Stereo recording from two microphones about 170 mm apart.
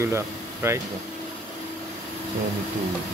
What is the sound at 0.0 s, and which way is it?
Speech, 15° right (ahead or behind).